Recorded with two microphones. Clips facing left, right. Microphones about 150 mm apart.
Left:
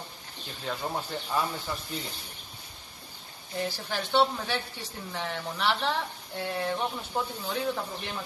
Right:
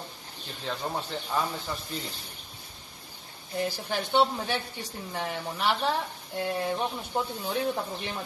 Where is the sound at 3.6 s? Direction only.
15° right (ahead or behind).